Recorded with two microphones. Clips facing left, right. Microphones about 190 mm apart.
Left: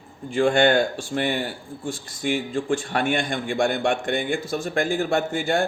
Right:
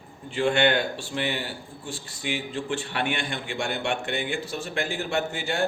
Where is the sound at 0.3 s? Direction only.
50° left (ahead or behind).